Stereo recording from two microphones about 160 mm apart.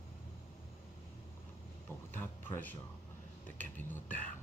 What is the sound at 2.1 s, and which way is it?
Speech, 10° left (ahead or behind).